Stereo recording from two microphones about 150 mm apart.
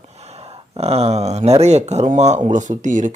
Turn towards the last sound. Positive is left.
turn(degrees=-55)  # may be behind; listen again after turning